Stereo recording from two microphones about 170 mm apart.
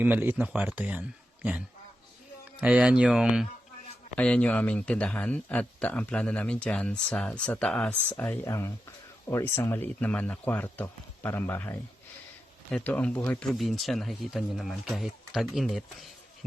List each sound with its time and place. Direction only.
0.0 s speech: 10° right (ahead or behind)
4.1 s speech: 5° left (ahead or behind)